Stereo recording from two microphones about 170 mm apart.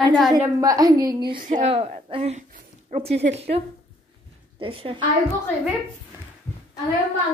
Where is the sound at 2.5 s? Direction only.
40° right (ahead or behind).